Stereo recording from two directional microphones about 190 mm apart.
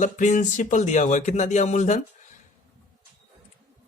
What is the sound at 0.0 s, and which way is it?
Speech, 40° left (ahead or behind).